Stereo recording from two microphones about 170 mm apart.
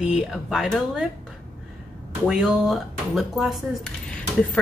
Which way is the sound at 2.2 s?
Centre (ahead or behind).